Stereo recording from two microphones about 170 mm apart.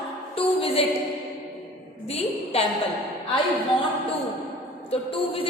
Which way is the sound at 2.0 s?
35° left (ahead or behind).